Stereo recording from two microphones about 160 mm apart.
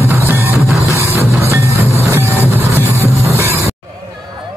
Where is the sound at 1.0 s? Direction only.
15° right (ahead or behind).